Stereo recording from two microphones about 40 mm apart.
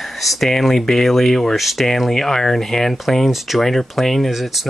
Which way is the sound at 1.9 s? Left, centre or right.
Centre.